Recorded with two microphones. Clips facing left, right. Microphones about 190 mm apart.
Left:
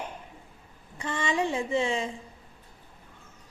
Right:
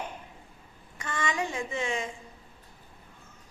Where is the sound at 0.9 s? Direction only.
30° left (ahead or behind).